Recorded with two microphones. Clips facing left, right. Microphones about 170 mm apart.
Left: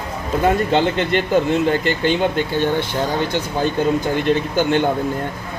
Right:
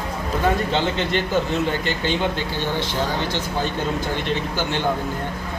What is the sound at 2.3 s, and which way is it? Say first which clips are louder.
Speech: left 6 dB; 55° left (ahead or behind).